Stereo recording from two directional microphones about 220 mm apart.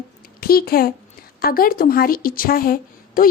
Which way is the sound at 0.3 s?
45° left (ahead or behind).